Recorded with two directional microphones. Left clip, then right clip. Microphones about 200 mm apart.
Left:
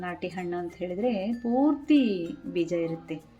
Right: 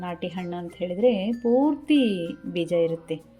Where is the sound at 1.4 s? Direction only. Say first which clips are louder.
Right 4 dB; 10° right (ahead or behind).